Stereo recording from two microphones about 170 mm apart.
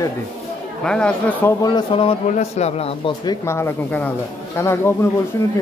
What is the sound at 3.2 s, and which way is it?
Speech, 15° left (ahead or behind).